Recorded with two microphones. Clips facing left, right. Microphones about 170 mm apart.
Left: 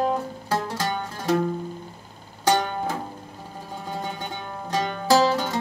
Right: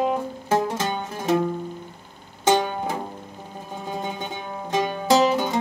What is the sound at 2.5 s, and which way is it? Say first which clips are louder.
Music: right 2 dB; 15° right (ahead or behind).